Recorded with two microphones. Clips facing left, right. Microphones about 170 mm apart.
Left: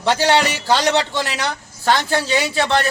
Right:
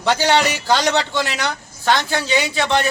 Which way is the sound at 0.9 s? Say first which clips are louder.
Left 1 dB; 35° left (ahead or behind).